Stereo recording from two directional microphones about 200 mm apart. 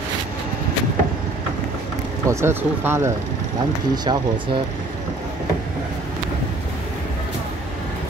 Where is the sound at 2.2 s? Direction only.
10° right (ahead or behind).